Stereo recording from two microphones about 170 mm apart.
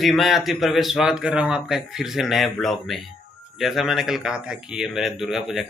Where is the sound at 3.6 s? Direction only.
Centre (ahead or behind).